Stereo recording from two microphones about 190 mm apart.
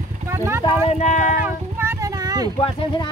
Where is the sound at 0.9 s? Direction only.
35° left (ahead or behind).